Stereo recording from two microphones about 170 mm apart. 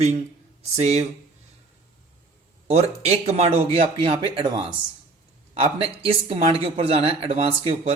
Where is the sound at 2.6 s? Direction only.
40° right (ahead or behind).